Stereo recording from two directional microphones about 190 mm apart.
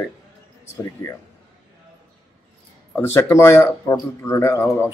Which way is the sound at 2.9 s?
15° left (ahead or behind).